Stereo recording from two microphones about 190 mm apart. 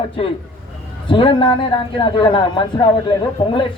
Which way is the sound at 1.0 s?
25° left (ahead or behind).